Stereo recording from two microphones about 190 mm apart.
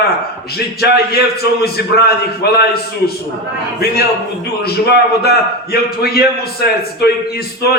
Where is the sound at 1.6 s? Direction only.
55° left (ahead or behind).